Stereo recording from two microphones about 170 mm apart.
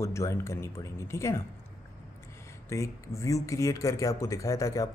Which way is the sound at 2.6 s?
15° left (ahead or behind).